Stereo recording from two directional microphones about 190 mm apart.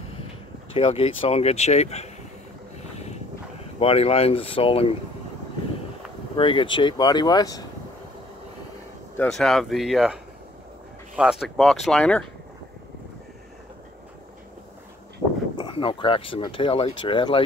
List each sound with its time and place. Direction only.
0.7 s speech: 30° left (ahead or behind)
3.8 s speech: 30° left (ahead or behind)
6.3 s speech: 25° left (ahead or behind)
9.1 s speech: 5° left (ahead or behind)
15.5 s speech: 25° left (ahead or behind)